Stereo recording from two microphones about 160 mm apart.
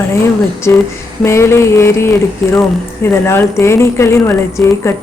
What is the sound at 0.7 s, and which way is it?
A woman's voice, 10° left (ahead or behind).